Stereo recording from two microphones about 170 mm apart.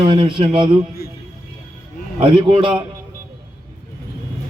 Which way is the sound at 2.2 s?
30° right (ahead or behind).